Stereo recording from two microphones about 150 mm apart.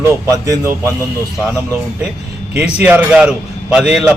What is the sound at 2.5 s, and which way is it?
A man's voice, 10° right (ahead or behind).